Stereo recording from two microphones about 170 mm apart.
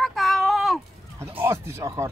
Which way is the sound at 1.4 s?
15° right (ahead or behind).